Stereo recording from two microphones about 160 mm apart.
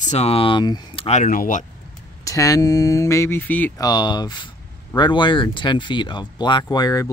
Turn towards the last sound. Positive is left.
turn(degrees=25)  # may be behind; listen again after turning